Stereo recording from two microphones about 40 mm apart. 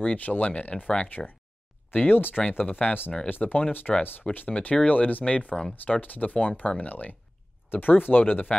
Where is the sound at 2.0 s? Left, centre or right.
Left.